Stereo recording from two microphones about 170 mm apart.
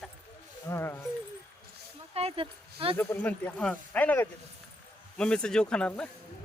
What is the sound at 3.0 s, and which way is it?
Speech, 10° left (ahead or behind).